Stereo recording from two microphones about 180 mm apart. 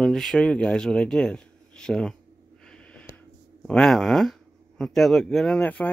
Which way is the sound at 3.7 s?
Centre (ahead or behind).